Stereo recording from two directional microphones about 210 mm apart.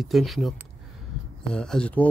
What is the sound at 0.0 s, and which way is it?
Speech, centre (ahead or behind).